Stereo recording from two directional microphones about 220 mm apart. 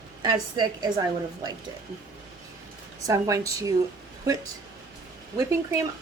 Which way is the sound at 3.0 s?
15° right (ahead or behind).